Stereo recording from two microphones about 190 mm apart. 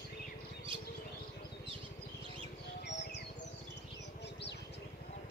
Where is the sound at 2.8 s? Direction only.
65° left (ahead or behind).